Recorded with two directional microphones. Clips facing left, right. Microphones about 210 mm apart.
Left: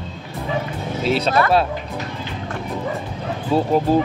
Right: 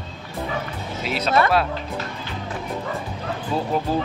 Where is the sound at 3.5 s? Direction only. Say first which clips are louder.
Left 7 dB; 30° left (ahead or behind).